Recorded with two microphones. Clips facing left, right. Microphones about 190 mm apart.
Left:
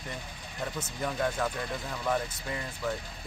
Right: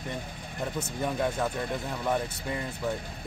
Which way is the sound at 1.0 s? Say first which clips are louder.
Right 1 dB; 20° right (ahead or behind).